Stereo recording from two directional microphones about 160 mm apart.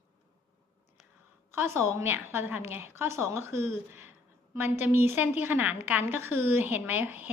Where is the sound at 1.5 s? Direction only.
15° right (ahead or behind).